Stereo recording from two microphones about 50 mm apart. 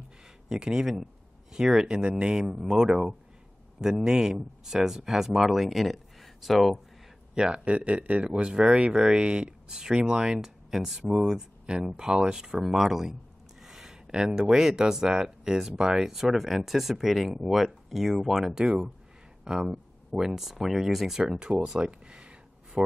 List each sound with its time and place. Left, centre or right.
0.5 s speech: centre
7.3 s speech: centre
21.2 s a sound: centre